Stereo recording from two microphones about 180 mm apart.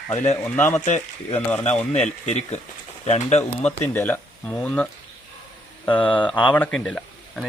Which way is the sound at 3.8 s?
10° left (ahead or behind).